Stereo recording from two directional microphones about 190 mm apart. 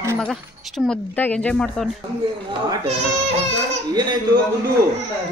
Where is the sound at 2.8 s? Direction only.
30° right (ahead or behind).